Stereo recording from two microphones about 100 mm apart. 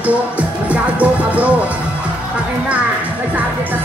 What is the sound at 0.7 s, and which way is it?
Music, 15° right (ahead or behind).